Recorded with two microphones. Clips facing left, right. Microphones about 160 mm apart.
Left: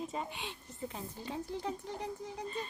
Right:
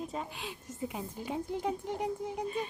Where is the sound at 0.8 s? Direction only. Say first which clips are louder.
Right 4 dB; 10° right (ahead or behind).